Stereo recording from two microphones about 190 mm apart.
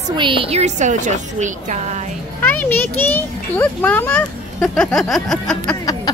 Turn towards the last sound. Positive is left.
turn(degrees=0)  # may be behind; listen again after turning